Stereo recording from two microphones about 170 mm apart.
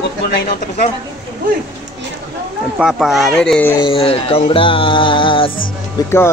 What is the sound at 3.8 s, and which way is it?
Music, 35° left (ahead or behind).